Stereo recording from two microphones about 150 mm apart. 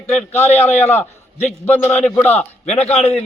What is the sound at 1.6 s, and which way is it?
Speech, 10° left (ahead or behind).